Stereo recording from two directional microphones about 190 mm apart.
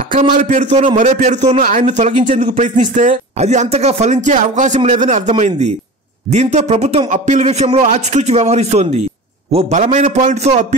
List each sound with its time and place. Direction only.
0.1 s a man's voice: 45° right (ahead or behind)